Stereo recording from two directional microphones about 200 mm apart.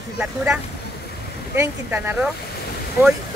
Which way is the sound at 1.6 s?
10° right (ahead or behind).